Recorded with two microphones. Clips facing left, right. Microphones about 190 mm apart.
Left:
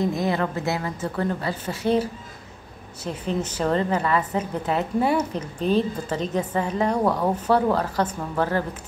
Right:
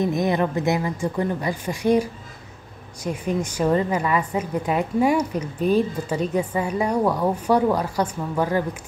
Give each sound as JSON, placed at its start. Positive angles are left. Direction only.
{"t": 0.0, "sound": "a woman's voice", "side_deg": -20}